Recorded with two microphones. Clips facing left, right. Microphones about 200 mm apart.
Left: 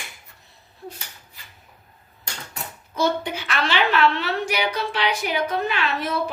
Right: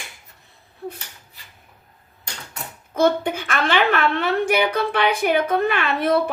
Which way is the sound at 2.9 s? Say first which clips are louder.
Right 5 dB; 55° right (ahead or behind).